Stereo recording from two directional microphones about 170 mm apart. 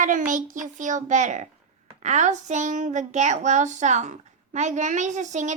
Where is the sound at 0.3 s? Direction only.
50° right (ahead or behind).